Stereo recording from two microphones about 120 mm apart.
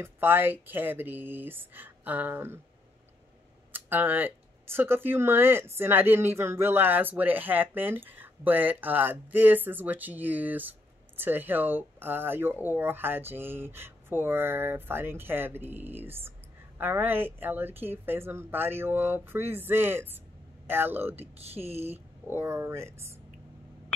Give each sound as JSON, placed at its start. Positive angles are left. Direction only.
{"t": 0.0, "sound": "speech", "side_deg": -15}
{"t": 3.7, "sound": "speech", "side_deg": -15}
{"t": 21.4, "sound": "speech", "side_deg": -60}
{"t": 22.3, "sound": "speech", "side_deg": -20}